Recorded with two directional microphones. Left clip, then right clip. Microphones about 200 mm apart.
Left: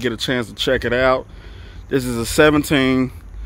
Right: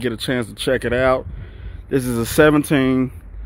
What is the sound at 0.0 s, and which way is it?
Speech, 5° right (ahead or behind).